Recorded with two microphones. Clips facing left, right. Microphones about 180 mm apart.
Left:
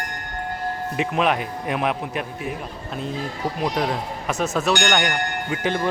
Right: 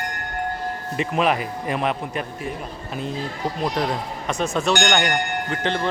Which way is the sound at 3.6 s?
Centre (ahead or behind).